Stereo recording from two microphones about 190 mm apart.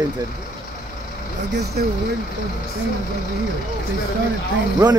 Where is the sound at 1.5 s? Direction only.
60° right (ahead or behind).